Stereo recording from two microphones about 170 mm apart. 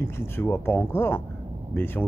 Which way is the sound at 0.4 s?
15° left (ahead or behind).